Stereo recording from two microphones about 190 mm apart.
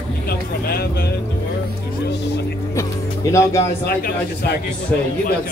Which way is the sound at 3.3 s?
15° left (ahead or behind).